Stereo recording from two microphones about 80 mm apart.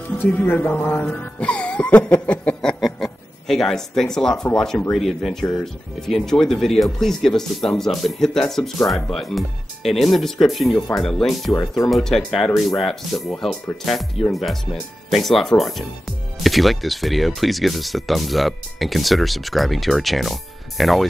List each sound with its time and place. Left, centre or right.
0.3 s speech: left
1.1 s music: centre
2.8 s speech: centre